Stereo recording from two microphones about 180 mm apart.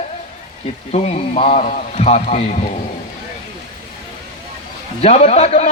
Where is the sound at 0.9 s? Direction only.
40° left (ahead or behind).